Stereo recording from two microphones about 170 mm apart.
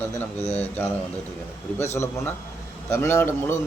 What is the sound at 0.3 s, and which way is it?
Speech, 40° left (ahead or behind).